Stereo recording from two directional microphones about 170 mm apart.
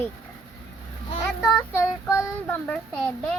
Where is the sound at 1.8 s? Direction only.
15° left (ahead or behind).